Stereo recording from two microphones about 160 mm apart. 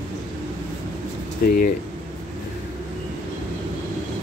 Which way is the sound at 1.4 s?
70° left (ahead or behind).